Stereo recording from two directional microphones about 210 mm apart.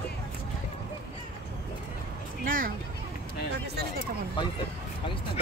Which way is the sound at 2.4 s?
40° right (ahead or behind).